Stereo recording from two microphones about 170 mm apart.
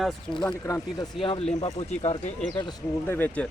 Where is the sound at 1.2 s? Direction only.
35° left (ahead or behind).